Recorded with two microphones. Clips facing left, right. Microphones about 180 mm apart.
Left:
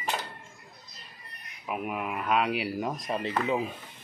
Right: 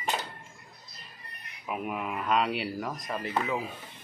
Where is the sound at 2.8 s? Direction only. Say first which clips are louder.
Left 3 dB; 25° left (ahead or behind).